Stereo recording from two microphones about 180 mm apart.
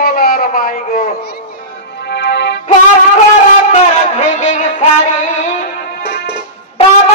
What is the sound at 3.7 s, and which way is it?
Music, 40° left (ahead or behind).